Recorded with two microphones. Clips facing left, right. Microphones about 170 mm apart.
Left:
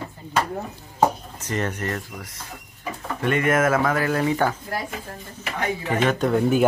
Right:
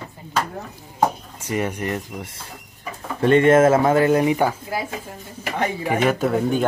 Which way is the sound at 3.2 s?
30° right (ahead or behind).